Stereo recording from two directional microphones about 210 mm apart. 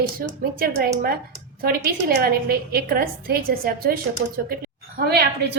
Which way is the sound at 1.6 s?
45° right (ahead or behind).